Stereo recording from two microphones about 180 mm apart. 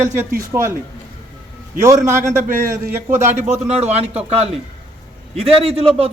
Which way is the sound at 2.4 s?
50° right (ahead or behind).